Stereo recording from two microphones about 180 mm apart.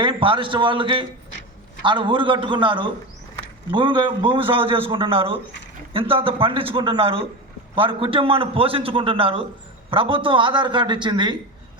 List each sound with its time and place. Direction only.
0.0 s a man's voice: 30° right (ahead or behind)